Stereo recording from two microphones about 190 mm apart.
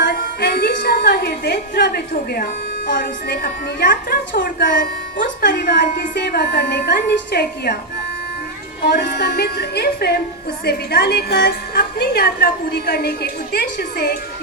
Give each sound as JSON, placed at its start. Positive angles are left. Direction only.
{"t": 0.0, "sound": "a woman's voice", "side_deg": 60}
{"t": 8.9, "sound": "a woman's voice", "side_deg": 60}